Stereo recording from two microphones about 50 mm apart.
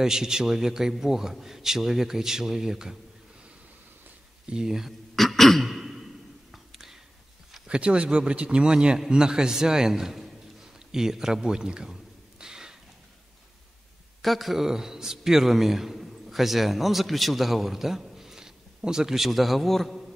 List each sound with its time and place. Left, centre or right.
0.0 s a man's voice: centre
4.5 s a man's voice: centre
5.1 s throat clearing: centre
6.5 s whispering: centre
7.6 s a man's voice: right; by 10.3 s centre
10.9 s a sound: centre
14.2 s a man's voice: centre